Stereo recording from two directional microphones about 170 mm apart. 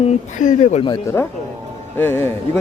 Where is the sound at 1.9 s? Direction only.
15° left (ahead or behind).